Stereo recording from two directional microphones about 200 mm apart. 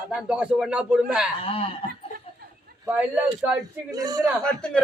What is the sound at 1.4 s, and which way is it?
Speech, 30° left (ahead or behind).